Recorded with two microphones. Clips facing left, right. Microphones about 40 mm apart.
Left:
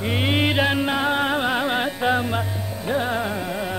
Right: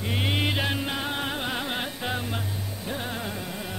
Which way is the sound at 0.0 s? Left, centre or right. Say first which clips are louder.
Left 6 dB; left.